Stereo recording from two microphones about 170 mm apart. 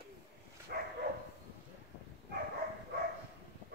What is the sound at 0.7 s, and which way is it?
Dog, 65° right (ahead or behind).